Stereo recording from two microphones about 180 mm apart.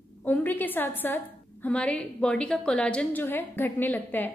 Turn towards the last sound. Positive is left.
turn(degrees=10)  # may be behind; listen again after turning